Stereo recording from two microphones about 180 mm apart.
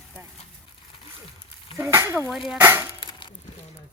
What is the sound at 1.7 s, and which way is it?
Sizzle, 15° right (ahead or behind).